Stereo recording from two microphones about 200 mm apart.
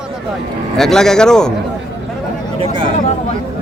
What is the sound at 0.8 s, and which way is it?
Speech, centre (ahead or behind).